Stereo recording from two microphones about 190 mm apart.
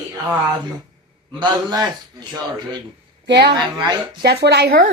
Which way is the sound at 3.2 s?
65° right (ahead or behind).